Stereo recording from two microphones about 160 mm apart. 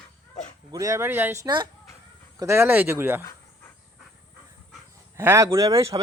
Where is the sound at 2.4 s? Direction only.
15° right (ahead or behind).